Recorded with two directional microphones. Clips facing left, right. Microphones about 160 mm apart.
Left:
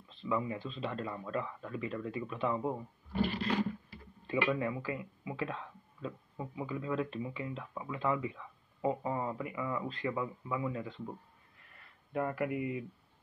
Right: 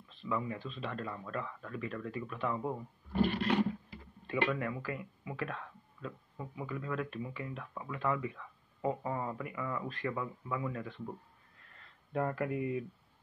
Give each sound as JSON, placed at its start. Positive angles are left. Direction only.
{"t": 0.3, "sound": "speech", "side_deg": 15}
{"t": 3.2, "sound": "roar", "side_deg": -60}
{"t": 4.3, "sound": "speech", "side_deg": 15}
{"t": 11.7, "sound": "a sound", "side_deg": 10}
{"t": 12.4, "sound": "speech", "side_deg": 15}